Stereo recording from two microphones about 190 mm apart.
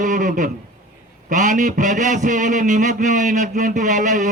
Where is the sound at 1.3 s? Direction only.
40° right (ahead or behind).